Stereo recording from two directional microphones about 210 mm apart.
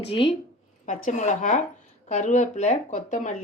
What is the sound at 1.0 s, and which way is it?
Speech, 35° left (ahead or behind).